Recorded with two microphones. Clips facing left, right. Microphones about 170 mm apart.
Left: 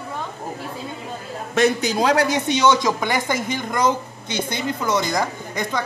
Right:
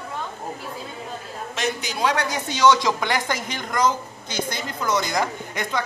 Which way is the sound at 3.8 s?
60° left (ahead or behind).